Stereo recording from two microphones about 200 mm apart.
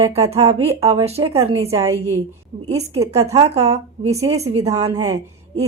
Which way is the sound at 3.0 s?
15° right (ahead or behind).